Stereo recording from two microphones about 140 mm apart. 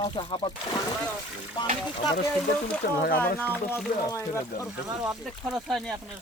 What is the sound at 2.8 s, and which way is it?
Speech, 90° left.